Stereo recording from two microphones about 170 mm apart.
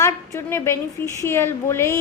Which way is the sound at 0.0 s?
15° left (ahead or behind).